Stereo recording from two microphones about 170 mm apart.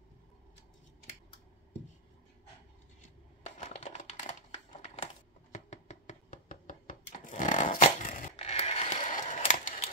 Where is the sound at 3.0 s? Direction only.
40° left (ahead or behind).